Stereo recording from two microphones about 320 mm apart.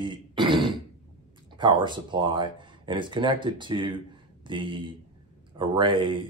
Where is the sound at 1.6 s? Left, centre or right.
Centre.